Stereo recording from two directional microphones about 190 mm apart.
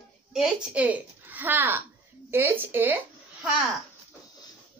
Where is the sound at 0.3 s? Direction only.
5° right (ahead or behind).